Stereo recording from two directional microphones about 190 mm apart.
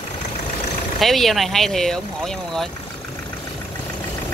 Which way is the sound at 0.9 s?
Centre (ahead or behind).